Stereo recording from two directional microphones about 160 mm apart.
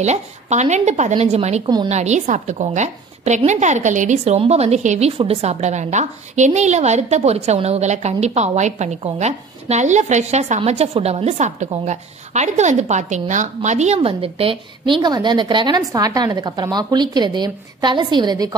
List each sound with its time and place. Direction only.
0.0 s a woman's voice: 45° right (ahead or behind); by 18.5 s 25° right (ahead or behind)